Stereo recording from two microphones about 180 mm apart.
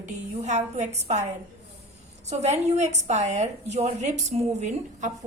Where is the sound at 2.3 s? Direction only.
40° right (ahead or behind).